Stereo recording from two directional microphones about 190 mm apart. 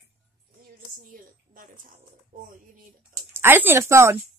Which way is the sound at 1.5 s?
45° right (ahead or behind).